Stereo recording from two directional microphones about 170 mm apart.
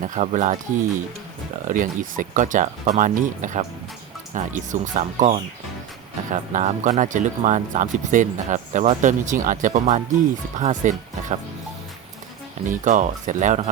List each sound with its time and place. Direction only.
0.0 s speech: 45° right (ahead or behind)
1.6 s speech: 50° right (ahead or behind)
6.5 s speech: 45° right (ahead or behind)
12.6 s speech: 45° right (ahead or behind)